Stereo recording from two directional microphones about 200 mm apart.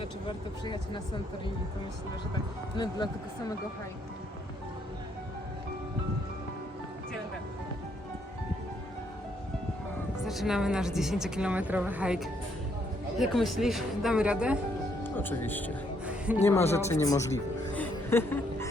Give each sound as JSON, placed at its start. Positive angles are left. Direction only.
{"t": 0.0, "sound": "speech", "side_deg": 25}
{"t": 2.7, "sound": "speech", "side_deg": 20}
{"t": 10.2, "sound": "a woman's voice", "side_deg": 0}
{"t": 15.0, "sound": "speech", "side_deg": 10}
{"t": 16.0, "sound": "music", "side_deg": -5}
{"t": 16.4, "sound": "speech", "side_deg": 10}
{"t": 17.7, "sound": "a sound", "side_deg": 10}